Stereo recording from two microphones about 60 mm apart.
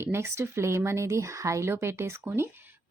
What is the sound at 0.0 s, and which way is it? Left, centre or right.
A woman's voice, right.